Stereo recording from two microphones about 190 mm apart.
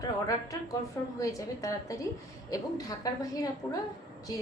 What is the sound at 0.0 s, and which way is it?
A woman's voice, 20° left (ahead or behind).